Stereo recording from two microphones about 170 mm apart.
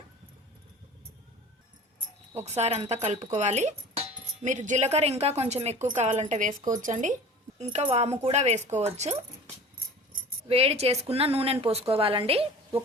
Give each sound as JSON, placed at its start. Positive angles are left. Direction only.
{"t": 2.3, "sound": "a woman's voice", "side_deg": -40}
{"t": 10.5, "sound": "a woman's voice", "side_deg": -35}